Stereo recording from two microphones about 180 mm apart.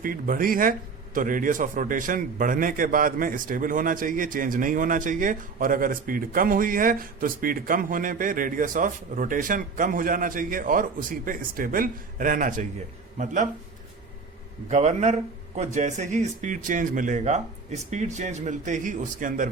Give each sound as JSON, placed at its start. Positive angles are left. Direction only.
{"t": 0.0, "sound": "a man's voice", "side_deg": -50}
{"t": 14.7, "sound": "speech", "side_deg": -40}